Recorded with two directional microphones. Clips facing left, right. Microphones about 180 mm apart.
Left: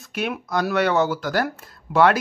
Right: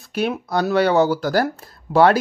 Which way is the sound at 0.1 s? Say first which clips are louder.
Right 4 dB; 35° right (ahead or behind).